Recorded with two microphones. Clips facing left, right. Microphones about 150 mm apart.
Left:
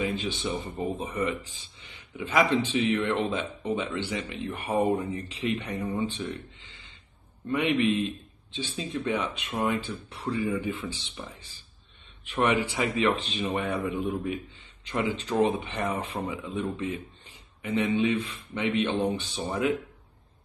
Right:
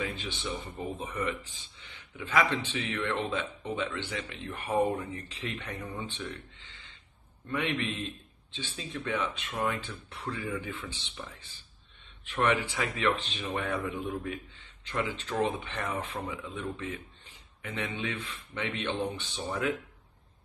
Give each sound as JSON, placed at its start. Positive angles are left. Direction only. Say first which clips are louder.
{"t": 0.0, "sound": "speech", "louder": "left 6 dB", "side_deg": 15}
{"t": 7.5, "sound": "speech", "louder": "left 7 dB", "side_deg": 15}
{"t": 12.4, "sound": "speech", "louder": "left 3 dB", "side_deg": 15}